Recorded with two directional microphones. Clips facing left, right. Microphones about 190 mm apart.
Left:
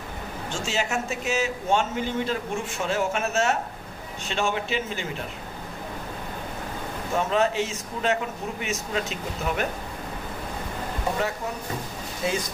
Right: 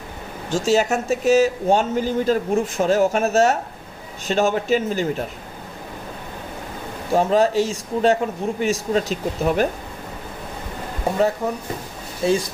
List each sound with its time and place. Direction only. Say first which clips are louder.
0.5 s speech: right 10 dB; 40° right (ahead or behind)
7.2 s speech: right 6 dB; 35° right (ahead or behind)
12.2 s speech: right 8 dB; 30° right (ahead or behind)